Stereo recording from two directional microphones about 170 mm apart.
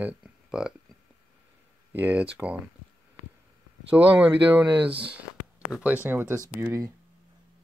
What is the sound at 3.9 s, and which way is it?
Speech, 10° right (ahead or behind).